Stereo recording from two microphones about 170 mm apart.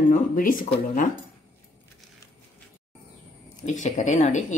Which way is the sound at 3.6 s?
45° left (ahead or behind).